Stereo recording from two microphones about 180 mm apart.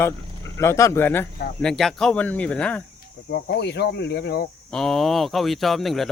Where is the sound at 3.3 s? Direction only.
70° left (ahead or behind).